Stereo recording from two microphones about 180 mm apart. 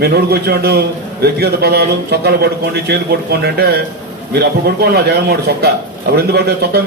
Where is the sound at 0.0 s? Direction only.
60° right (ahead or behind).